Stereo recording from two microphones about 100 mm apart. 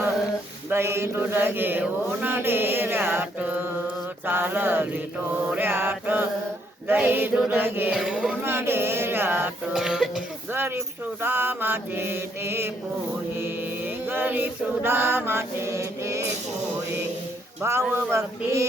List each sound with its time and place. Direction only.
0.7 s mantra: 25° right (ahead or behind)
7.9 s speech: 5° right (ahead or behind)
8.4 s mantra: 25° right (ahead or behind)
9.7 s speech: 5° right (ahead or behind)
10.5 s mantra: 20° right (ahead or behind)
17.6 s mantra: 25° right (ahead or behind)